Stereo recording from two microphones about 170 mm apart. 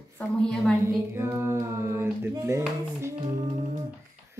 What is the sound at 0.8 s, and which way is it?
Speech, 15° right (ahead or behind).